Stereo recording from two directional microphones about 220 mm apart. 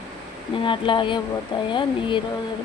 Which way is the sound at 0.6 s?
20° left (ahead or behind).